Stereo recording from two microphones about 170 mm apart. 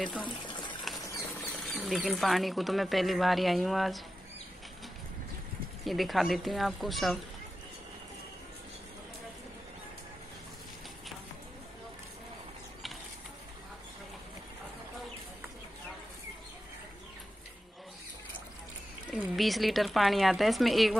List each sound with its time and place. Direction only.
0.4 s water: 25° left (ahead or behind)
0.9 s bird flight: 20° left (ahead or behind)
1.6 s speech: centre (ahead or behind)
5.9 s speech: centre (ahead or behind)
19.1 s speech: centre (ahead or behind)